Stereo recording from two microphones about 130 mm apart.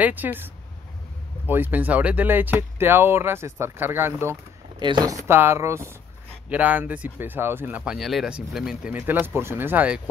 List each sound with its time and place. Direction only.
0.0 s speech: 15° right (ahead or behind)
1.5 s speech: 15° right (ahead or behind)
4.7 s speech: 35° right (ahead or behind); by 10.0 s 10° right (ahead or behind)